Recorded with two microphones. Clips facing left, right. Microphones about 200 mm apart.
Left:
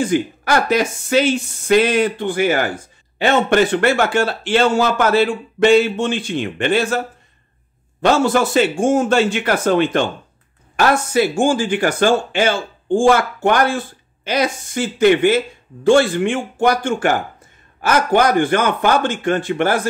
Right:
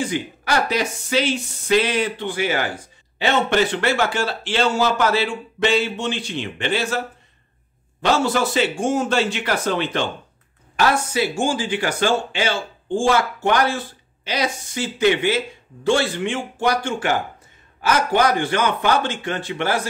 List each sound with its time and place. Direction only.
0.0 s speech: 50° left (ahead or behind)
8.0 s speech: 50° left (ahead or behind)